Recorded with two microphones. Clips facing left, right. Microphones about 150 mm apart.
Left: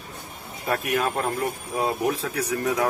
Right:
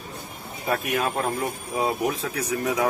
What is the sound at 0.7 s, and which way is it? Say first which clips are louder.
Speech: even; centre (ahead or behind).